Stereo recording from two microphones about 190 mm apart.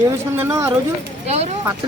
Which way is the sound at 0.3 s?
15° right (ahead or behind).